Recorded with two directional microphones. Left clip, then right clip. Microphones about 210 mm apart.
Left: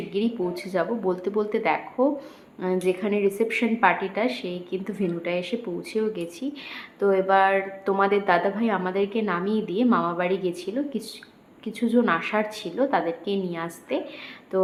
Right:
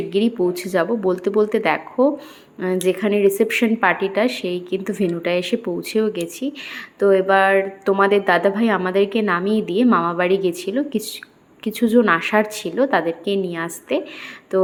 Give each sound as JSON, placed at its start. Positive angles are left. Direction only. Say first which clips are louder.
{"t": 0.1, "sound": "a woman's voice", "louder": "right 7 dB", "side_deg": -25}